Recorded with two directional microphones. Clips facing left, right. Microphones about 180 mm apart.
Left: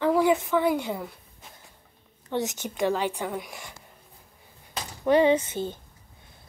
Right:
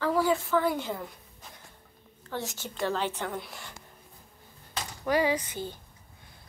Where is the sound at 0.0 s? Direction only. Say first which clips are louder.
Left 4 dB; 15° left (ahead or behind).